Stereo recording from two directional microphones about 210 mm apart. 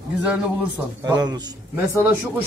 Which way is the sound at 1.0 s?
20° right (ahead or behind).